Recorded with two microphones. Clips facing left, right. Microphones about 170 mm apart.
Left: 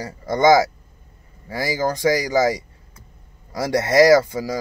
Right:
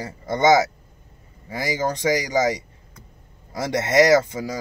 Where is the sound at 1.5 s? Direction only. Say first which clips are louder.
Left 2 dB; 20° right (ahead or behind).